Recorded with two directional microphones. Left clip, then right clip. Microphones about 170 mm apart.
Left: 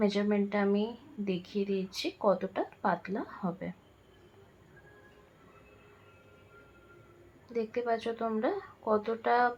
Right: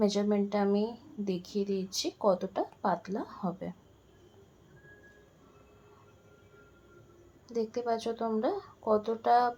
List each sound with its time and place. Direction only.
0.0 s speech: 10° left (ahead or behind)
1.3 s a woman's voice: 10° right (ahead or behind)
2.0 s speech: 10° left (ahead or behind)
7.4 s a woman's voice: 10° left (ahead or behind)